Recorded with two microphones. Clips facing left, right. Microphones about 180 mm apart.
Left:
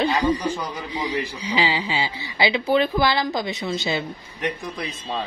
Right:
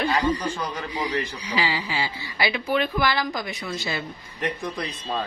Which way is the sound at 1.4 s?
20° left (ahead or behind).